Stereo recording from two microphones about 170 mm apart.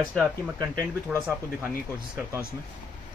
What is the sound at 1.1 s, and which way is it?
Speech, 15° right (ahead or behind).